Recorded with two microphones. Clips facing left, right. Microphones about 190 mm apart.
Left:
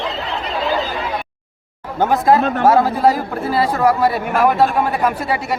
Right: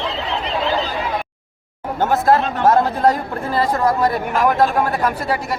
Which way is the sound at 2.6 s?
5° left (ahead or behind).